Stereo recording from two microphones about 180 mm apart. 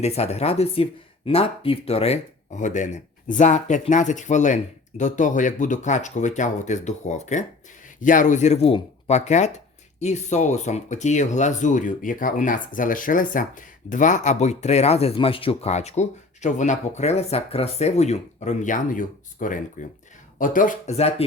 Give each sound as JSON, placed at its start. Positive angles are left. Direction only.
{"t": 0.0, "sound": "speech", "side_deg": 35}